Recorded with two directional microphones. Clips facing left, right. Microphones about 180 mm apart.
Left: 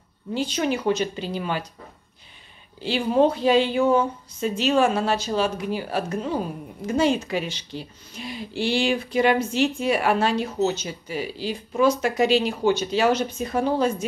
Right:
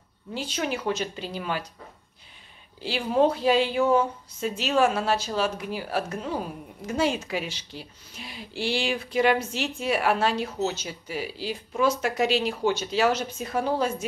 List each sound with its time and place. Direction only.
0.3 s a woman's voice: 5° right (ahead or behind)
2.8 s a woman's voice: 5° right (ahead or behind)